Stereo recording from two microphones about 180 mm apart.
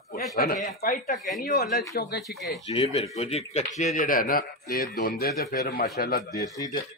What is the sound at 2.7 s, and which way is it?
Speech, 35° left (ahead or behind).